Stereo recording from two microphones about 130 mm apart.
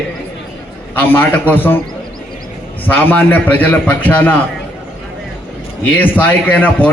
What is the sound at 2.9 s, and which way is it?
A man's voice, 15° left (ahead or behind).